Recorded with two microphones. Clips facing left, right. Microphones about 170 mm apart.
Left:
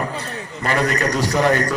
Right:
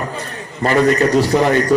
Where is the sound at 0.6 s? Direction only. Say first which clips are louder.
Right 7 dB; 30° right (ahead or behind).